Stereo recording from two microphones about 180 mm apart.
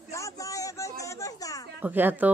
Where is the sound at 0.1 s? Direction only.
15° left (ahead or behind).